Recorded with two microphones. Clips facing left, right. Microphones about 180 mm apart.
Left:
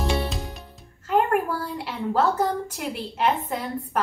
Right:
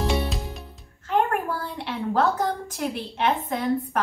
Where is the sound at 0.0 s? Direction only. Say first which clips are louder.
Right 1 dB; centre (ahead or behind).